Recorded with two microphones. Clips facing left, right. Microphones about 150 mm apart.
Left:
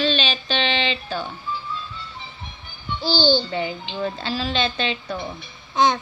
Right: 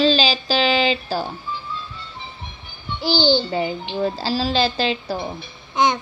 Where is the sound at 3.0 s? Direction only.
15° right (ahead or behind).